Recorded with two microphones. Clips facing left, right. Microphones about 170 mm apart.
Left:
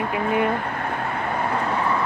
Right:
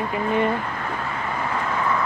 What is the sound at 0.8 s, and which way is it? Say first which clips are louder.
Vehicle: left 2 dB; 60° left (ahead or behind).